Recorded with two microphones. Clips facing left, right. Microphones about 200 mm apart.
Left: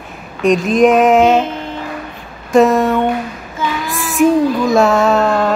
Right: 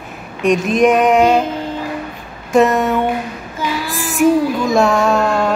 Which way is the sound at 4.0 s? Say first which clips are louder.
Left 2 dB; centre (ahead or behind).